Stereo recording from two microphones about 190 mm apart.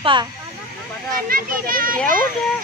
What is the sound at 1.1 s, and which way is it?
Speech, 50° right (ahead or behind).